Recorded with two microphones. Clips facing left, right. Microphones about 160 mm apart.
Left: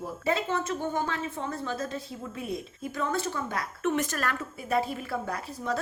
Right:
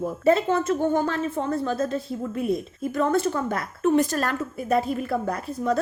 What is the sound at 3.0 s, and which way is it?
Speech, 50° right (ahead or behind).